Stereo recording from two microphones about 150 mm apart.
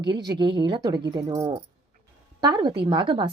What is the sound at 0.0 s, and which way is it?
A woman's voice, 30° right (ahead or behind).